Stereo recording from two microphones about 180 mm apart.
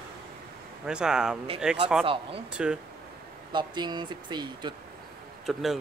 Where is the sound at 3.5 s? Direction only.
25° right (ahead or behind).